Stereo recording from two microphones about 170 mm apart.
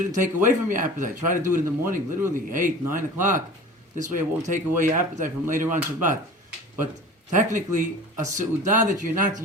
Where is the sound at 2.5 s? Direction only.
50° right (ahead or behind).